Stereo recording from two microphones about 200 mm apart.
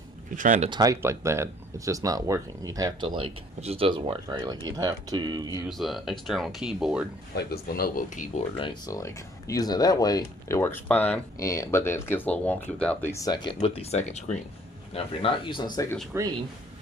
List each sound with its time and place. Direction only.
0.3 s speech: 40° right (ahead or behind)
0.7 s speech: 20° right (ahead or behind)
5.6 s speech: centre (ahead or behind)
7.3 s speech: 50° left (ahead or behind)
8.5 s speech: 20° left (ahead or behind)
16.1 s speech: 15° right (ahead or behind)